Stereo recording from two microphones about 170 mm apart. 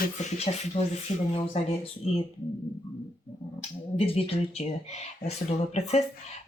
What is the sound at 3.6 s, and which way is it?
Speech, 35° left (ahead or behind).